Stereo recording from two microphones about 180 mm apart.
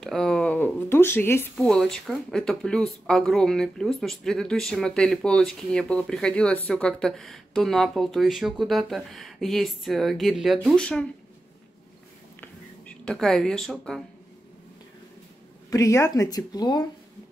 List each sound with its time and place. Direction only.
0.0 s speech: centre (ahead or behind)
12.4 s a sound: 5° left (ahead or behind)
15.7 s speech: 15° left (ahead or behind)